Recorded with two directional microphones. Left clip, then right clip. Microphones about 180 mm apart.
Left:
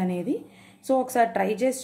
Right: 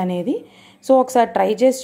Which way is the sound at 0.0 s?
30° right (ahead or behind).